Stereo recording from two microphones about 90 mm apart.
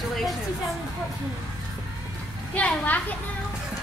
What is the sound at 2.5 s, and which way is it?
Speech, 15° left (ahead or behind).